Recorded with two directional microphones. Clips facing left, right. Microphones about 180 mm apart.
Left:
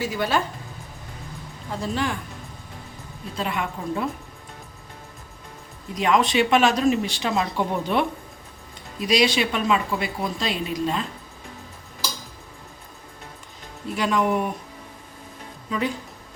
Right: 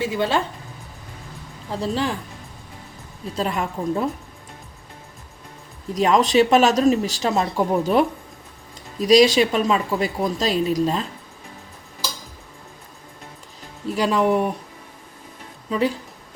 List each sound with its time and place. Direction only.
0.0 s speech: 25° right (ahead or behind)
1.7 s speech: 35° right (ahead or behind)
3.3 s speech: 40° right (ahead or behind)
5.9 s speech: 40° right (ahead or behind)
13.8 s speech: 35° right (ahead or behind)
15.7 s speech: 35° right (ahead or behind)